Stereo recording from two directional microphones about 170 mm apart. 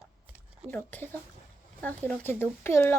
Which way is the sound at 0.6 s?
10° left (ahead or behind).